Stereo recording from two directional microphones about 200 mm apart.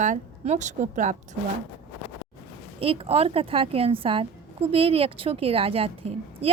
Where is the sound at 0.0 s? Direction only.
35° right (ahead or behind).